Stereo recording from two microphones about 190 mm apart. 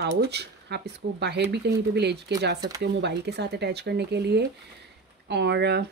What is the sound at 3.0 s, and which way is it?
Speech, 60° right (ahead or behind).